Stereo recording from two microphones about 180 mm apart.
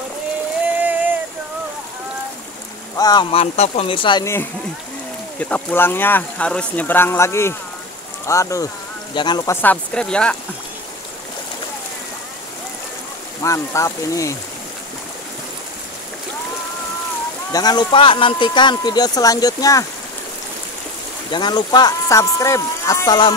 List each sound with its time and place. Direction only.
3.0 s speech: 25° left (ahead or behind)
5.4 s speech: 10° left (ahead or behind); by 9.6 s 25° left (ahead or behind)
9.6 s speech: 5° left (ahead or behind)
13.4 s speech: 15° left (ahead or behind)
17.5 s speech: 20° left (ahead or behind)
21.3 s speech: 25° left (ahead or behind)